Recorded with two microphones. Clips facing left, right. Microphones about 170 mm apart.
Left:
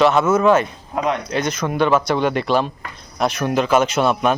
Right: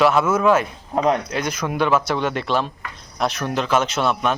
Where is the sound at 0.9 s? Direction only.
35° right (ahead or behind).